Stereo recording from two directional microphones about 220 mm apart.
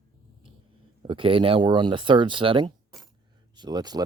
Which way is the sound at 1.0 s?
25° right (ahead or behind).